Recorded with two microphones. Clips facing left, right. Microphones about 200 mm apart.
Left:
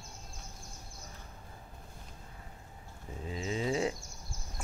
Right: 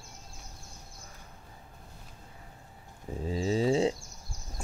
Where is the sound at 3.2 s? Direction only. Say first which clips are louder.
Right 7 dB; 35° right (ahead or behind).